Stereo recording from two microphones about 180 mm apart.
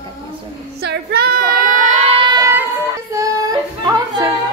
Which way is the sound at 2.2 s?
20° right (ahead or behind).